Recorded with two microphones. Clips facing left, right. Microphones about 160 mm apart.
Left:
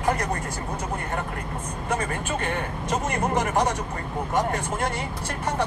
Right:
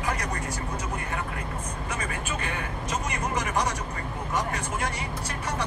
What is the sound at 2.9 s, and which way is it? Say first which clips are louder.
Speech: left 6 dB; 50° left (ahead or behind).